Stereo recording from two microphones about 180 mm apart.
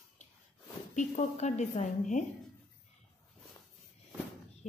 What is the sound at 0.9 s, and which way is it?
A woman's voice, 40° left (ahead or behind).